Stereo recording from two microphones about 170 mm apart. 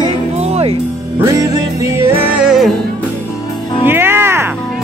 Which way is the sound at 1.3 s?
20° right (ahead or behind).